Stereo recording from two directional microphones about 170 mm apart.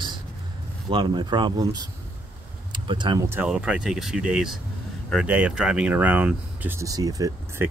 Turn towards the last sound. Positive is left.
turn(degrees=-20)  # may be behind; listen again after turning